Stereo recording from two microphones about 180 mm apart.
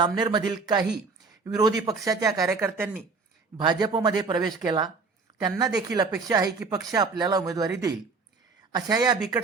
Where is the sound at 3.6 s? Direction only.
25° right (ahead or behind).